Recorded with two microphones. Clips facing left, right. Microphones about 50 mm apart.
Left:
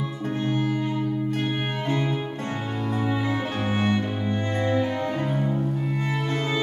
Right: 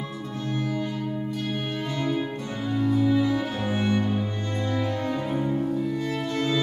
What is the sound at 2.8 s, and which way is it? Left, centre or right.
Music, left.